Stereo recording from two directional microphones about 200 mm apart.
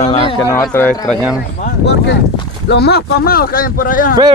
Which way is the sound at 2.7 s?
55° left (ahead or behind).